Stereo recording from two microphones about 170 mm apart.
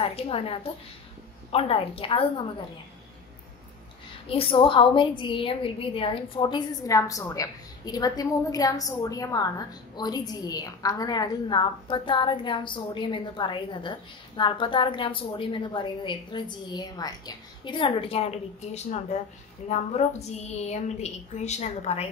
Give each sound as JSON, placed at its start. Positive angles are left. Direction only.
{"t": 0.0, "sound": "a woman's voice", "side_deg": 35}
{"t": 4.3, "sound": "a woman's voice", "side_deg": 30}